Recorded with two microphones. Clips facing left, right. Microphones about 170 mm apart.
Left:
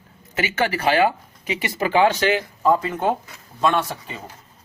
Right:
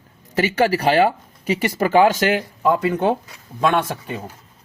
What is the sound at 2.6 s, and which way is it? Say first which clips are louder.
Speech: right 1 dB; 70° right (ahead or behind).